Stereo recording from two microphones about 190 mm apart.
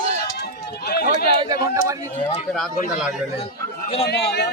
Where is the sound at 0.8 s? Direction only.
55° left (ahead or behind).